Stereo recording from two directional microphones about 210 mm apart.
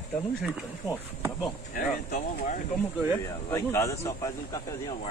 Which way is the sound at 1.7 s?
40° left (ahead or behind).